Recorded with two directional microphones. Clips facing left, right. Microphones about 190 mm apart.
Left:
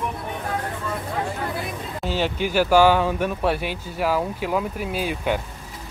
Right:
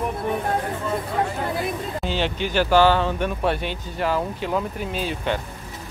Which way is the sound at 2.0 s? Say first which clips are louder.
Left 2 dB; 5° left (ahead or behind).